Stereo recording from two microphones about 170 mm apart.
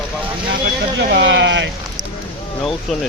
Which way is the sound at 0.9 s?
90° right.